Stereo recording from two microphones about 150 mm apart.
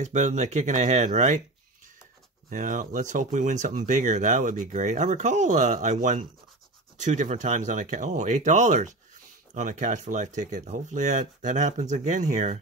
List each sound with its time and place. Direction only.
0.0 s speech: 50° right (ahead or behind)
2.5 s speech: 60° right (ahead or behind)